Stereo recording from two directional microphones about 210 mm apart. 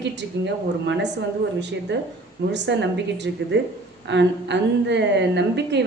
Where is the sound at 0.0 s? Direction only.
55° right (ahead or behind).